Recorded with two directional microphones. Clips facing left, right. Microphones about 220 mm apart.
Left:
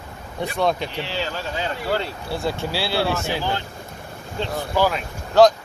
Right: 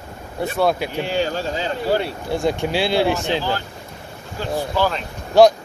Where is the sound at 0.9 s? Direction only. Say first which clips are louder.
Right 6 dB; 50° right (ahead or behind).